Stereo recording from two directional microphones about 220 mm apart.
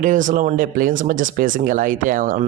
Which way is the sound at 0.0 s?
35° right (ahead or behind).